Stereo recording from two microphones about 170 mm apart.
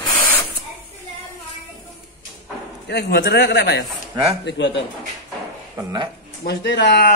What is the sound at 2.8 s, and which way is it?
A man's voice, 75° left (ahead or behind).